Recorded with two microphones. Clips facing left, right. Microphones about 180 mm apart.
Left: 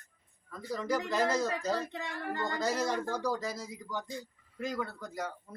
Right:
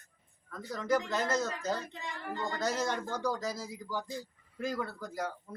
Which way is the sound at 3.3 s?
Centre (ahead or behind).